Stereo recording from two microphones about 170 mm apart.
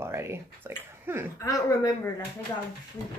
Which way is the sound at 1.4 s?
20° left (ahead or behind).